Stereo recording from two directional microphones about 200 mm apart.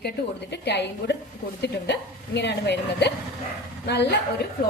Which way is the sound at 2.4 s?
60° left (ahead or behind).